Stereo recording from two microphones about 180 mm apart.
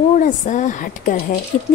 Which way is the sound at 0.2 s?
45° left (ahead or behind).